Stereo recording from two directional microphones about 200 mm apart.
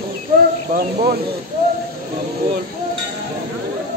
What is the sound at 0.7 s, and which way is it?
Speech, 50° right (ahead or behind).